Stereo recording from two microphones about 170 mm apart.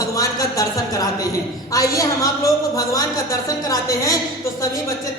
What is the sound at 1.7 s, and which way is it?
A man's voice, 20° left (ahead or behind).